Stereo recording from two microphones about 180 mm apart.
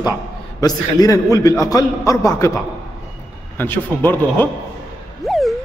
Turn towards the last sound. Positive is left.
turn(degrees=0)  # may be behind; listen again after turning